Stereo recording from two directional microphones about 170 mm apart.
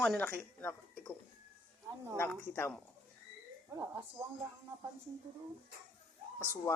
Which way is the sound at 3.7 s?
20° right (ahead or behind).